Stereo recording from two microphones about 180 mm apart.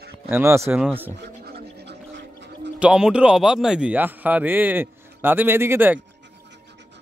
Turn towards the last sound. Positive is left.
turn(degrees=-10)  # may be behind; listen again after turning